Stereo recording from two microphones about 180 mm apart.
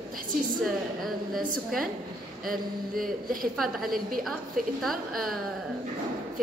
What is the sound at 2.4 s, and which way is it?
Speech, 50° right (ahead or behind).